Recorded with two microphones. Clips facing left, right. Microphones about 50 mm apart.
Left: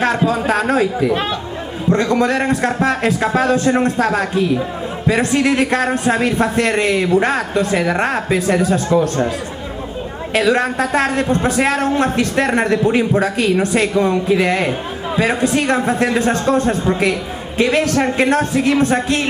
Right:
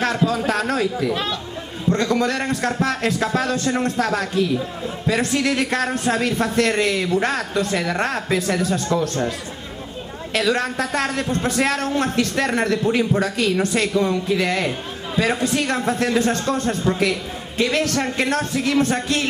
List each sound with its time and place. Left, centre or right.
0.0 s a man's voice: centre
1.9 s a man's voice: centre
10.3 s a man's voice: centre